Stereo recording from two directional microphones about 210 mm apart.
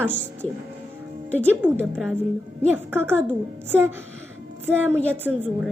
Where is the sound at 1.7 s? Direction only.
5° left (ahead or behind).